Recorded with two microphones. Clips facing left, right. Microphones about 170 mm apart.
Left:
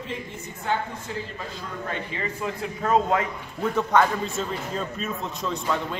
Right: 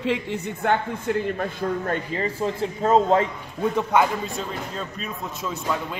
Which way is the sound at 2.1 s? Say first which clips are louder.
Right 5 dB; 35° right (ahead or behind).